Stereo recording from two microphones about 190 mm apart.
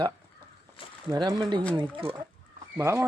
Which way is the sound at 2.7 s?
15° right (ahead or behind).